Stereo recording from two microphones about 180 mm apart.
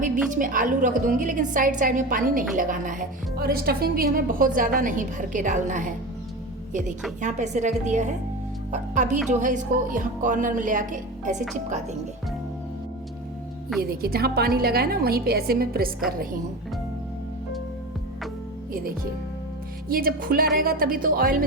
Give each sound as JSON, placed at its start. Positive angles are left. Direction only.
{"t": 0.3, "sound": "a woman's voice", "side_deg": -45}
{"t": 7.2, "sound": "a woman's voice", "side_deg": -40}
{"t": 13.9, "sound": "a woman's voice", "side_deg": -60}
{"t": 19.9, "sound": "a woman's voice", "side_deg": -55}